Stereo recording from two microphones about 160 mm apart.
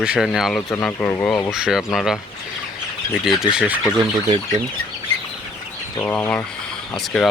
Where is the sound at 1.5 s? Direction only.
5° right (ahead or behind).